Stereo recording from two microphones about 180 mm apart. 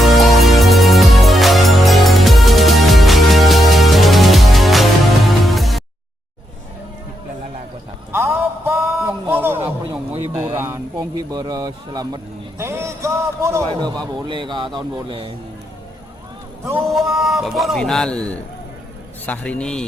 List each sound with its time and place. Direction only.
0.0 s music: centre (ahead or behind)
8.1 s a sound: 15° right (ahead or behind)
10.3 s a man's voice: 15° right (ahead or behind)
16.8 s a man's voice: centre (ahead or behind)